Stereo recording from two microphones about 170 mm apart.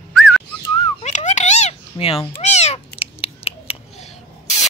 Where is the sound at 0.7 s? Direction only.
45° left (ahead or behind).